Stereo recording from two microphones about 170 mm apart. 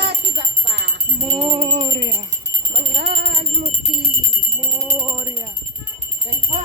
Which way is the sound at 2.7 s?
85° right.